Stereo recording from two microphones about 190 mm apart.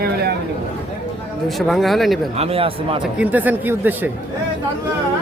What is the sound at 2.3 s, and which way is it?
Speech, 30° right (ahead or behind).